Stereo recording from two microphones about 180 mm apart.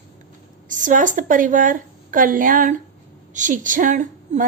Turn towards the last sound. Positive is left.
turn(degrees=-45)  # may be behind; listen again after turning